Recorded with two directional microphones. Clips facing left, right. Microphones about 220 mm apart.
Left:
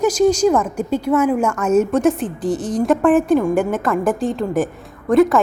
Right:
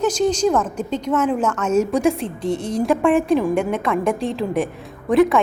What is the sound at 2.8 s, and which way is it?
A woman's voice, centre (ahead or behind).